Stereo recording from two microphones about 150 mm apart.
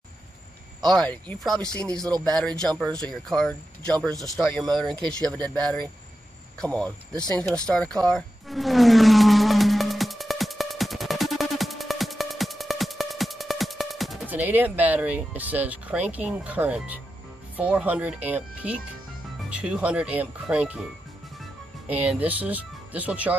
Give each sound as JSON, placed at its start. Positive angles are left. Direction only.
{"t": 0.9, "sound": "speech", "side_deg": 10}
{"t": 2.0, "sound": "speech", "side_deg": -25}
{"t": 2.2, "sound": "speech", "side_deg": 5}
{"t": 6.6, "sound": "a sound", "side_deg": 5}
{"t": 14.2, "sound": "speech", "side_deg": -10}
{"t": 21.8, "sound": "speech", "side_deg": -10}